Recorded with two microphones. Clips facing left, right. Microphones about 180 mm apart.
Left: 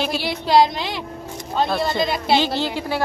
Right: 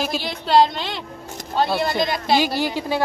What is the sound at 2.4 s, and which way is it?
Speech, 10° right (ahead or behind).